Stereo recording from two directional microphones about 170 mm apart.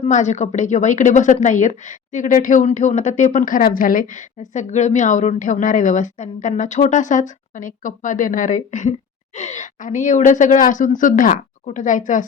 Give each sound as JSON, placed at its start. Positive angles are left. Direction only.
{"t": 0.0, "sound": "speech", "side_deg": 45}